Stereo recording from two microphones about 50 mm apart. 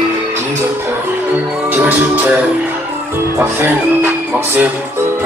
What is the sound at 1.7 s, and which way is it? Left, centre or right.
Music, right.